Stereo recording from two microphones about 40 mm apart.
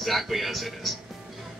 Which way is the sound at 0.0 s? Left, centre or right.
Centre.